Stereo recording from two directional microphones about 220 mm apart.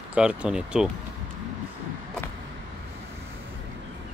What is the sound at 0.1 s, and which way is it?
Speech, 5° right (ahead or behind).